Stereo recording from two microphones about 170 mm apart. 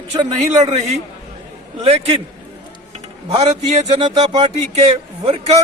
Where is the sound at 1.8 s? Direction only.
35° right (ahead or behind).